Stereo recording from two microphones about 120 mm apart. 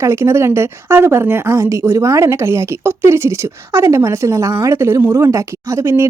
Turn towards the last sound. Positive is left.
turn(degrees=-20)  # may be behind; listen again after turning